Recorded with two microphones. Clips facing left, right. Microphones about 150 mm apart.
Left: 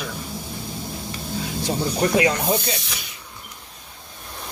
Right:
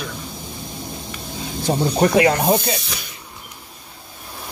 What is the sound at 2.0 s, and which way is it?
Speech, 60° right (ahead or behind).